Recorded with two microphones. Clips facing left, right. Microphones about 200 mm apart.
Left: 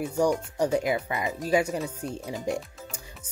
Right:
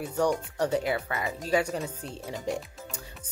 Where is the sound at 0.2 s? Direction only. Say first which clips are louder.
Left 2 dB; 10° left (ahead or behind).